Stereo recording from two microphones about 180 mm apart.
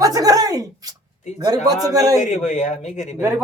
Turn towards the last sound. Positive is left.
turn(degrees=40)  # may be behind; listen again after turning